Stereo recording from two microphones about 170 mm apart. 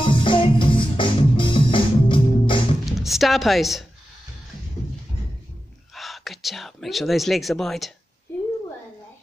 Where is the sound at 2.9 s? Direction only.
Centre (ahead or behind).